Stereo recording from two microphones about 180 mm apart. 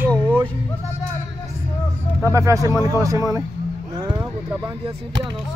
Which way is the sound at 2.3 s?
15° right (ahead or behind).